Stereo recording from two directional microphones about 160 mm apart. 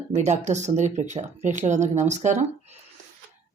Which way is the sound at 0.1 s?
45° right (ahead or behind).